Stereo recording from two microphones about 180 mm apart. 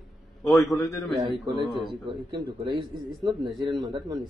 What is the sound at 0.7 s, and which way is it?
Speech, 15° left (ahead or behind).